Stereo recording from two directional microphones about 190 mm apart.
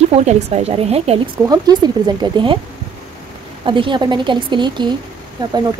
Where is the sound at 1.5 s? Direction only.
20° right (ahead or behind).